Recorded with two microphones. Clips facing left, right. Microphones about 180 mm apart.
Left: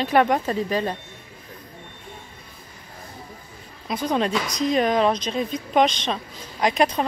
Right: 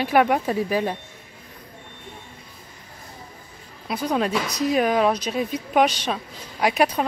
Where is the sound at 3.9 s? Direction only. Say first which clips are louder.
Even; 5° right (ahead or behind).